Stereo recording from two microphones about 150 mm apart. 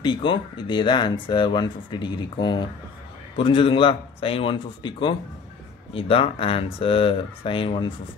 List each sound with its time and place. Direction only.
0.0 s speech: 35° left (ahead or behind)